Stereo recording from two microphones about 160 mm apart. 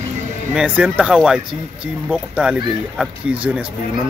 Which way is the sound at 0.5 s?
10° right (ahead or behind).